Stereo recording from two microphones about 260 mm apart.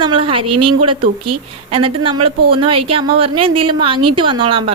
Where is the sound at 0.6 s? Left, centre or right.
Centre.